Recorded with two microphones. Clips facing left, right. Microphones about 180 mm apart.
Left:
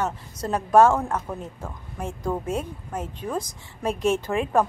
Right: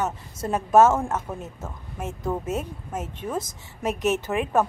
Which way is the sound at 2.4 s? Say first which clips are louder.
Even; 25° right (ahead or behind).